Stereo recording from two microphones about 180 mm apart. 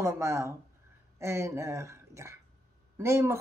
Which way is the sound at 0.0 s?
15° right (ahead or behind).